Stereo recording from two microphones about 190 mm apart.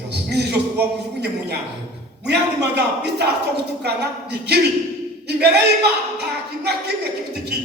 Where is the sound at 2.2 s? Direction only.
60° right (ahead or behind).